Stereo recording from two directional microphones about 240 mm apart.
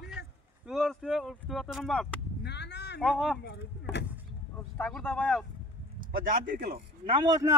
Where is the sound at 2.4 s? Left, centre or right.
Left.